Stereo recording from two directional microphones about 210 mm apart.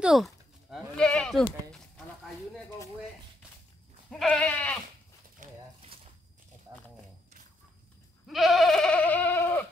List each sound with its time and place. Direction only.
0.0 s sheep: centre (ahead or behind)
4.1 s goat: 5° left (ahead or behind)
5.4 s a sound: 30° right (ahead or behind)
8.3 s goat: centre (ahead or behind)